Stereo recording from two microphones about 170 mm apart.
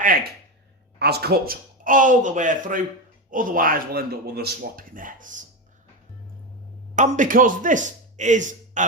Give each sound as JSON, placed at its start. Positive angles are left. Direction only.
{"t": 0.9, "sound": "a man's voice", "side_deg": -70}
{"t": 6.9, "sound": "speech", "side_deg": -50}